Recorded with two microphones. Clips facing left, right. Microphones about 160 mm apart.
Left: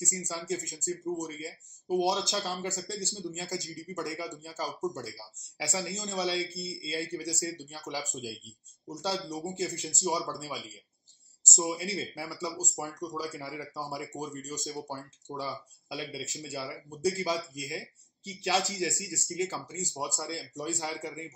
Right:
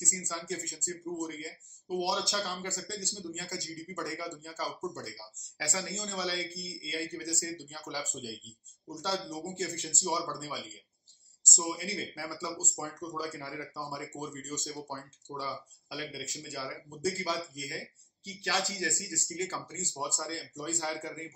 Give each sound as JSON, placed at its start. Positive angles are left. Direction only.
{"t": 0.3, "sound": "speech", "side_deg": 20}
{"t": 8.8, "sound": "speech", "side_deg": 15}